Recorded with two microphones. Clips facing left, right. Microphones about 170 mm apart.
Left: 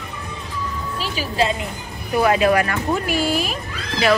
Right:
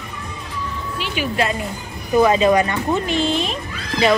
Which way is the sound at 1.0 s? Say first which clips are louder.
Even; 30° left (ahead or behind).